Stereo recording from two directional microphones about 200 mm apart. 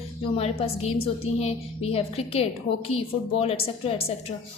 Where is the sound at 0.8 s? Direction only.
30° left (ahead or behind).